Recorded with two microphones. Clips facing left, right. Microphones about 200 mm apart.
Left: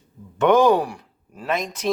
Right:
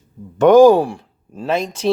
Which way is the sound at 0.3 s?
35° right (ahead or behind).